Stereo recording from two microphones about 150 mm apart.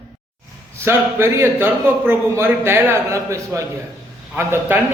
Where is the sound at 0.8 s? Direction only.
15° right (ahead or behind).